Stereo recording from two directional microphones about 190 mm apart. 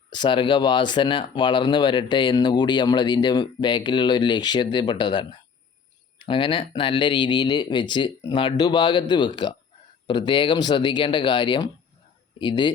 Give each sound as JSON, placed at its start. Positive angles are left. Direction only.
{"t": 0.1, "sound": "speech", "side_deg": 25}